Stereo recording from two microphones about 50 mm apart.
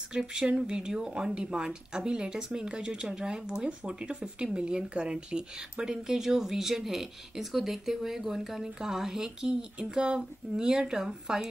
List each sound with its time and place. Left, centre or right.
0.1 s speech: centre